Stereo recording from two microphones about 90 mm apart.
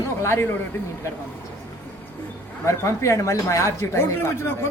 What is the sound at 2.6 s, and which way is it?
Speech, 35° left (ahead or behind).